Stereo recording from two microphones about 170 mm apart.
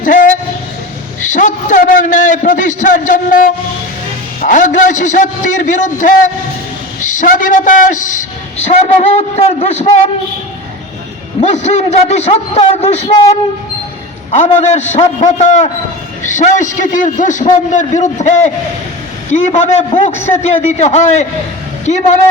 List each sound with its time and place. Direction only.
0.0 s a sound: 50° left (ahead or behind)
1.2 s a man's voice: 50° left (ahead or behind)
11.3 s a man's voice: 45° left (ahead or behind)
14.3 s a man's voice: 45° left (ahead or behind)